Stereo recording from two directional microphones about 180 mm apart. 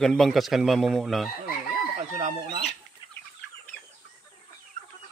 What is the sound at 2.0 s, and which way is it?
Chicken, 40° right (ahead or behind).